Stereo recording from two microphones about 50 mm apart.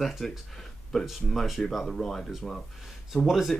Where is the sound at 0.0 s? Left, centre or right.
Centre.